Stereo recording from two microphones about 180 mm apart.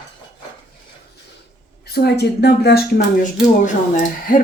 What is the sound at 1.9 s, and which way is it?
Speech, 65° left (ahead or behind).